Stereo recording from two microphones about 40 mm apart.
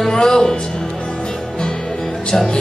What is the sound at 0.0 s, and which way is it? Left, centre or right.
Speech, centre.